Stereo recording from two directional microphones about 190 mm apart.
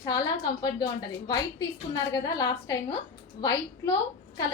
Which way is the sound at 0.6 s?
20° left (ahead or behind).